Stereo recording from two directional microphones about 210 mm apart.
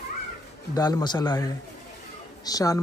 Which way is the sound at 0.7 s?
20° left (ahead or behind).